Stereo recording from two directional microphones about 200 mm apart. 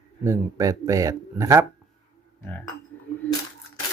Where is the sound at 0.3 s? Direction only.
15° right (ahead or behind).